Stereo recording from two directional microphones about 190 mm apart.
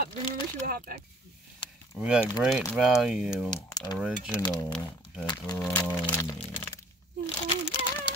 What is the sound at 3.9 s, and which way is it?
Speech, centre (ahead or behind).